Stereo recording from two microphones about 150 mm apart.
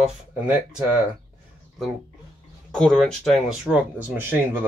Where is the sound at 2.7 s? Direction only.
5° left (ahead or behind).